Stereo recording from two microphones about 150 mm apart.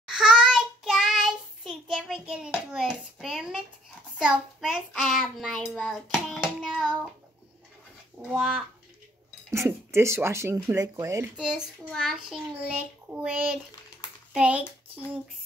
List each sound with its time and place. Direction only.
0.1 s child singing: 5° right (ahead or behind)
2.7 s hands: centre (ahead or behind)
4.2 s child singing: 5° right (ahead or behind)
8.3 s speech: 10° right (ahead or behind)
11.3 s child singing: 5° right (ahead or behind)
14.3 s a child's voice: 10° right (ahead or behind)